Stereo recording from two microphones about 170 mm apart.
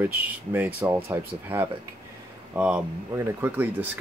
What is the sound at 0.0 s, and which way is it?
Speech, 10° right (ahead or behind).